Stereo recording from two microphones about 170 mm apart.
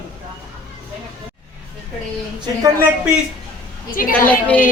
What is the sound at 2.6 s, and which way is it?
Speech, 15° right (ahead or behind).